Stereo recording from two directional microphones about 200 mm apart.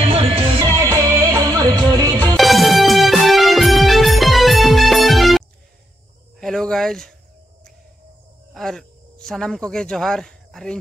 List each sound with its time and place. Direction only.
0.7 s music: 15° right (ahead or behind)
2.3 s music: centre (ahead or behind)
6.4 s a sound: centre (ahead or behind)
8.5 s speech: centre (ahead or behind)